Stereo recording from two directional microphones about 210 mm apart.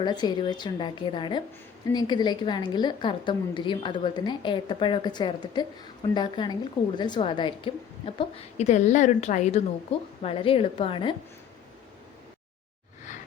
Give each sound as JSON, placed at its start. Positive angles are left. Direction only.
{"t": 0.0, "sound": "a woman's voice", "side_deg": 20}